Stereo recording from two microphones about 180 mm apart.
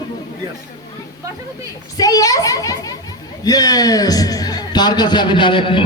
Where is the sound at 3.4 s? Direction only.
20° left (ahead or behind).